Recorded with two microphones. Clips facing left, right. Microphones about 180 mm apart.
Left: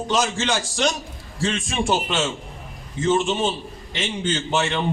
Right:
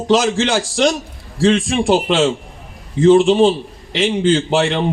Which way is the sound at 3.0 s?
90° right.